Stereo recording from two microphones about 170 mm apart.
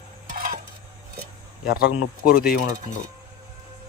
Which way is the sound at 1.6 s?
65° left (ahead or behind).